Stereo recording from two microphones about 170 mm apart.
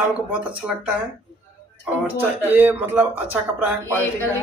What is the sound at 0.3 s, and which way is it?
Speech, 10° right (ahead or behind).